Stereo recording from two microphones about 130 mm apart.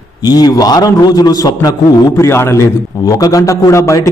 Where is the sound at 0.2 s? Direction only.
30° left (ahead or behind).